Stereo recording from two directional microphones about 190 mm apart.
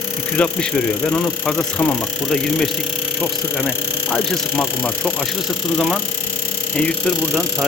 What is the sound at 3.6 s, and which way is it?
Speech, 5° left (ahead or behind).